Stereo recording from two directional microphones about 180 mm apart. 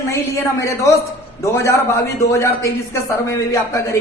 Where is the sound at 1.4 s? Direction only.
15° left (ahead or behind).